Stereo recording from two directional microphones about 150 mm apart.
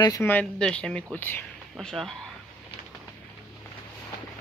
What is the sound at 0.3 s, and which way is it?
Speech, 5° left (ahead or behind).